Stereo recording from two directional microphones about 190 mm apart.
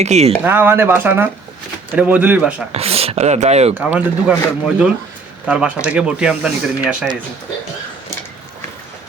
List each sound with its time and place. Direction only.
0.0 s speech: 35° right (ahead or behind)
0.4 s speech: 10° right (ahead or behind)
2.7 s speech: 30° right (ahead or behind)
3.8 s speech: 5° right (ahead or behind)